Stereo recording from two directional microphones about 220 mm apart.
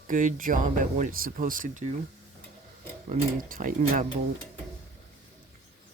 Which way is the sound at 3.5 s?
40° right (ahead or behind).